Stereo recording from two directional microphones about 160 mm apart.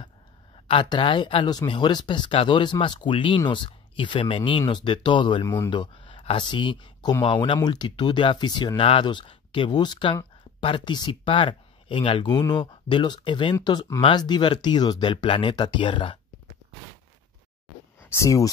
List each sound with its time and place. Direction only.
0.7 s speech: 30° left (ahead or behind)
5.4 s speech: 15° left (ahead or behind)
5.7 s speech: 30° left (ahead or behind)
18.1 s speech: 20° left (ahead or behind)